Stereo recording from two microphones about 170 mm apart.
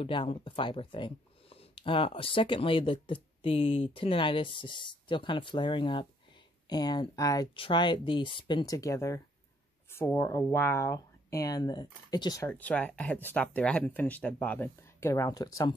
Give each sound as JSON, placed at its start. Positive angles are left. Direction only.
{"t": 0.0, "sound": "speech", "side_deg": 30}
{"t": 12.4, "sound": "speech", "side_deg": 10}